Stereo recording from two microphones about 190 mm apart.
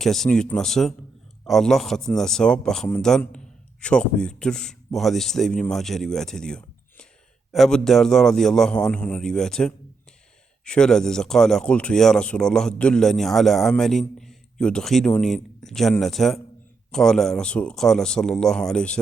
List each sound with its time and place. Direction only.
0.0 s speech: centre (ahead or behind)